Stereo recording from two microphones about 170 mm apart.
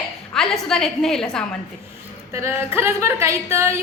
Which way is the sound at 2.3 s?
15° right (ahead or behind).